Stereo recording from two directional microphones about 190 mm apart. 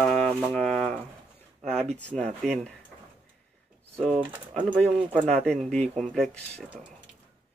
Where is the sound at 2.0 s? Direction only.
5° left (ahead or behind).